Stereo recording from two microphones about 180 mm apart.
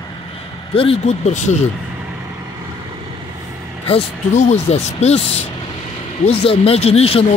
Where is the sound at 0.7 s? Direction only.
30° left (ahead or behind).